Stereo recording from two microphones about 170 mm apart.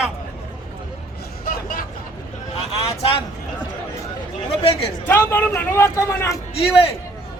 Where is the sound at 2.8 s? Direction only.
35° left (ahead or behind).